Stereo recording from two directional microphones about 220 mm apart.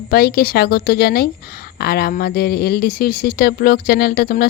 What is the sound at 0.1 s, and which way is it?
Speech, 45° left (ahead or behind).